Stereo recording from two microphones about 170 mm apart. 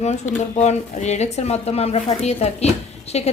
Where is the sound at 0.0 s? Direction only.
40° left (ahead or behind).